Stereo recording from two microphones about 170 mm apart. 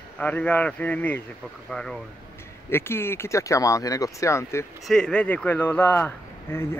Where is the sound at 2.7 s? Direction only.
15° left (ahead or behind).